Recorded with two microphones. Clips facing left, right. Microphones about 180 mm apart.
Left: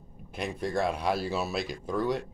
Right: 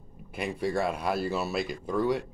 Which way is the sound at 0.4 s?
5° right (ahead or behind).